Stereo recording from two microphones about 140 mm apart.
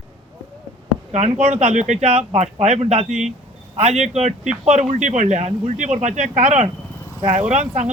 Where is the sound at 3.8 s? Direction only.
50° right (ahead or behind).